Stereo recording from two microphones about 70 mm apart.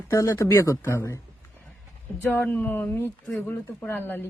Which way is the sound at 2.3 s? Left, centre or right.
Left.